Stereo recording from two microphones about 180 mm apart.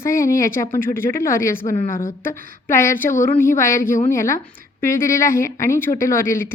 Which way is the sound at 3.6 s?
15° left (ahead or behind).